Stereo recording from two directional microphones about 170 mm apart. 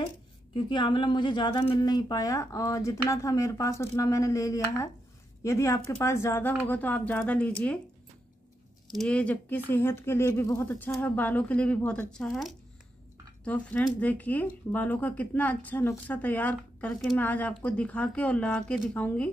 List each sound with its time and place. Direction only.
0.7 s speech: 25° left (ahead or behind); by 7.8 s 5° left (ahead or behind)
8.8 s speech: 5° left (ahead or behind)